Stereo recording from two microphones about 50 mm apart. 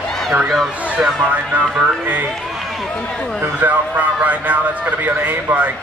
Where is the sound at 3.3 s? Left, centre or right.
Right.